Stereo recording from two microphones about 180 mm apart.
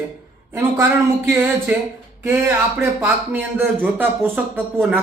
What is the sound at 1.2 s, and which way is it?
Speech, 15° right (ahead or behind).